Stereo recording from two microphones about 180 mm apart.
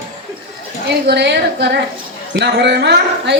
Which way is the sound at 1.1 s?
70° right (ahead or behind).